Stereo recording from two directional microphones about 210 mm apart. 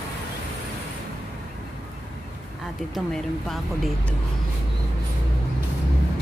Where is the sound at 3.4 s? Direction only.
Centre (ahead or behind).